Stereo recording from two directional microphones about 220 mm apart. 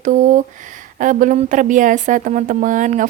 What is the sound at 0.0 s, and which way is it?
Speech, 35° right (ahead or behind).